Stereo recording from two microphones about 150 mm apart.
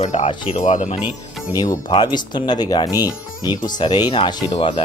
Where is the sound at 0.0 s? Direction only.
50° left (ahead or behind).